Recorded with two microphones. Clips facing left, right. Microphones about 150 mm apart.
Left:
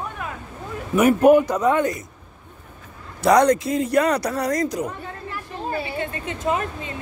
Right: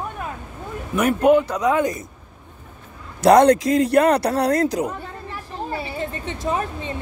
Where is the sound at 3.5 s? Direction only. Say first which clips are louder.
Right 4 dB; 85° right; by 4.9 s 70° right (ahead or behind).